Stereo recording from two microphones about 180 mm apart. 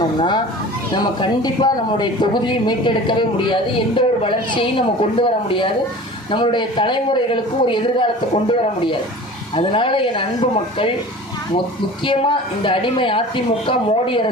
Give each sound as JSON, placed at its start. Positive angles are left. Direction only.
{"t": 0.2, "sound": "speech", "side_deg": 25}
{"t": 12.0, "sound": "speech", "side_deg": 30}